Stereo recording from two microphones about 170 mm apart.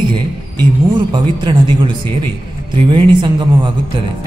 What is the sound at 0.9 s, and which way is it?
Speech, 25° right (ahead or behind).